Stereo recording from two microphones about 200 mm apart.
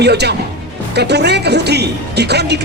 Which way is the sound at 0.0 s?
55° right (ahead or behind).